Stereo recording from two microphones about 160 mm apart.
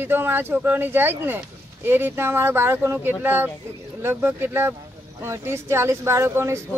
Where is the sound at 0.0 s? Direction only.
15° right (ahead or behind).